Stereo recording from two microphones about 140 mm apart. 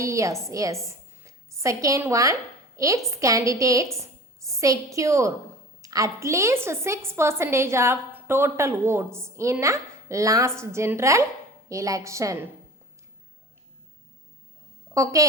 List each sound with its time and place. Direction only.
0.0 s a woman's voice: 20° right (ahead or behind)
14.9 s a woman's voice: 25° right (ahead or behind)